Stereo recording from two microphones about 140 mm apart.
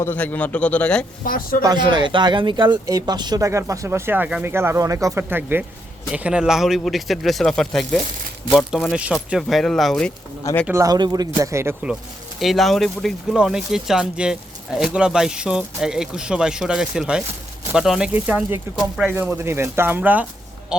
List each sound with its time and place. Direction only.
0.0 s a man's voice: 15° left (ahead or behind)
1.6 s speech: 30° right (ahead or behind); by 10.1 s centre (ahead or behind)
10.7 s speech: 25° right (ahead or behind)
12.4 s speech: centre (ahead or behind)